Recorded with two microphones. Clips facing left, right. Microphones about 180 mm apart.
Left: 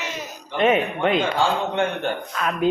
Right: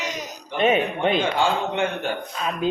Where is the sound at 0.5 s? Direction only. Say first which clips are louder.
Left 1 dB; 25° right (ahead or behind).